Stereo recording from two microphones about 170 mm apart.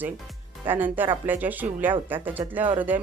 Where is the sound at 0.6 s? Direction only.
10° right (ahead or behind).